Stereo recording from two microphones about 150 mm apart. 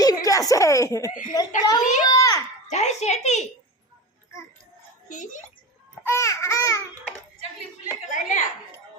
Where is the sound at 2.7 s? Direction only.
50° left (ahead or behind).